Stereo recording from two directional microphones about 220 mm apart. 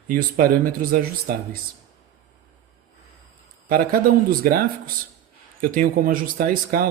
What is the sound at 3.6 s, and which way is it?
Speech, 40° right (ahead or behind).